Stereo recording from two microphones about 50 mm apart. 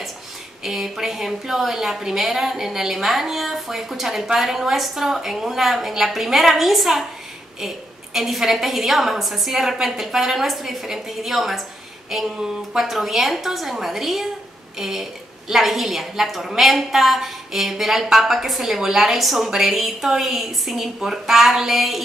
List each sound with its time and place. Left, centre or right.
0.7 s a woman's voice: centre